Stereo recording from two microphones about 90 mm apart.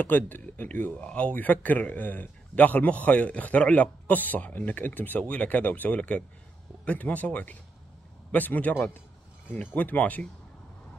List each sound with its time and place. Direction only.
0.0 s speech: 20° left (ahead or behind)